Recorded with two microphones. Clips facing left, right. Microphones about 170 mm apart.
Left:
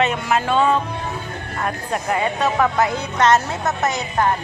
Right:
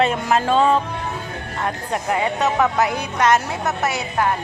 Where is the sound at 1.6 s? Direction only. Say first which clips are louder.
Even; 20° right (ahead or behind).